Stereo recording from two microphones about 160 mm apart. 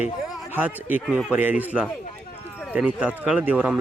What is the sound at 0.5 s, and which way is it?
A man's voice, 10° right (ahead or behind).